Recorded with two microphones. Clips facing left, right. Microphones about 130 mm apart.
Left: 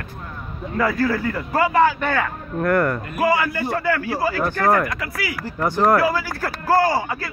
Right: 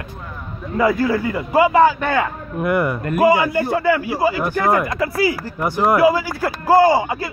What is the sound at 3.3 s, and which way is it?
Speech, 20° right (ahead or behind).